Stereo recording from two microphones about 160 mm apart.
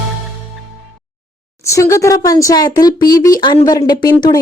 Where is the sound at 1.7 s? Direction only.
20° left (ahead or behind).